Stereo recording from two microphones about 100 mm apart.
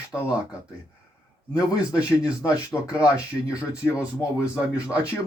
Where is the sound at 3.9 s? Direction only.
15° right (ahead or behind).